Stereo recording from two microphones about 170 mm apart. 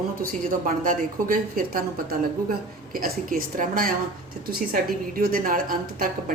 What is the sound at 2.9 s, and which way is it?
A woman's voice, 60° right (ahead or behind).